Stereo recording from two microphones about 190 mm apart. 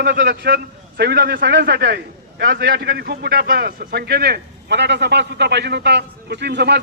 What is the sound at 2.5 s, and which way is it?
A man's voice, 50° right (ahead or behind).